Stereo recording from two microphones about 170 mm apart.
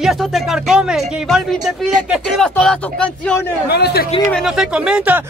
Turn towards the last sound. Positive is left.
turn(degrees=-5)  # may be behind; listen again after turning